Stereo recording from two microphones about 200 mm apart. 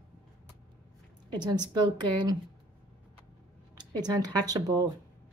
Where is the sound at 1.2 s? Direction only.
20° right (ahead or behind).